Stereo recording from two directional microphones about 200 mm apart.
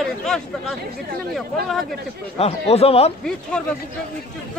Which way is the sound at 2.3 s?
30° left (ahead or behind).